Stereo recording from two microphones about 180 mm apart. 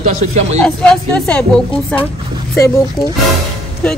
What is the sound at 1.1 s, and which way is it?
Speech, 5° left (ahead or behind).